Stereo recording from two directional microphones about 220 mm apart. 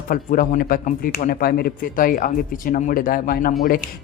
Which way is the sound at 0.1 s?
40° left (ahead or behind).